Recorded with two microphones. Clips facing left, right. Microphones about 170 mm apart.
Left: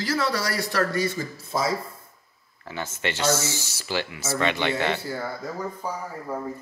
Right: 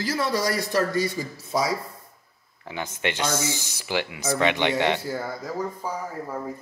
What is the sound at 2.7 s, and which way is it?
Speech, 15° right (ahead or behind).